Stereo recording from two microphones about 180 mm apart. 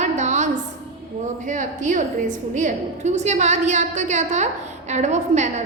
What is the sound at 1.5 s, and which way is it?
A woman's voice, 45° right (ahead or behind).